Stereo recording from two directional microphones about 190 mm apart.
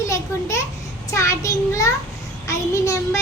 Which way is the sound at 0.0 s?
15° left (ahead or behind).